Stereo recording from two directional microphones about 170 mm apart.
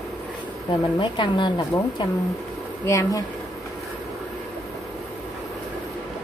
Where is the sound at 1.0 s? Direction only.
30° left (ahead or behind).